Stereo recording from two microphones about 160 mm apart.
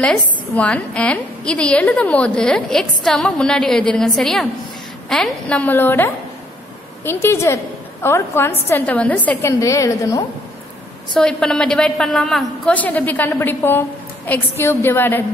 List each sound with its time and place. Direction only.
0.0 s a woman's voice: 5° left (ahead or behind)
11.1 s a woman's voice: 5° left (ahead or behind)